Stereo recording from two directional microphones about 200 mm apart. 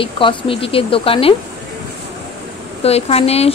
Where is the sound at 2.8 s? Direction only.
30° left (ahead or behind).